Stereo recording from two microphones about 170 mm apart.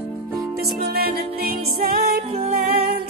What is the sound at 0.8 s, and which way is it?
Music, 65° right (ahead or behind).